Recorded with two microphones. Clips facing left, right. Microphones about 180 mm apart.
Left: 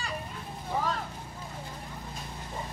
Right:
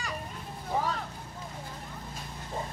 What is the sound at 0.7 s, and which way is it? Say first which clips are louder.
Vehicle: right 1 dB; 20° right (ahead or behind).